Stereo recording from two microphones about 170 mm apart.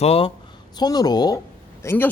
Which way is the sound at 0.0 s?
35° left (ahead or behind).